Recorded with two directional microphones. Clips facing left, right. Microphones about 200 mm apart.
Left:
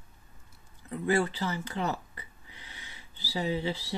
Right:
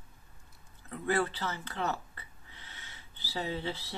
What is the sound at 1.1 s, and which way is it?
Speech, 15° left (ahead or behind).